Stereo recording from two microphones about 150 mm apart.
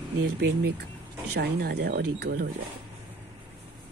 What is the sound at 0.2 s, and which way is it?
Speech, 90° right.